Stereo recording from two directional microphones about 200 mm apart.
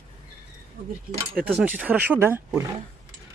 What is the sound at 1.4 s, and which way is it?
Speech, 10° right (ahead or behind).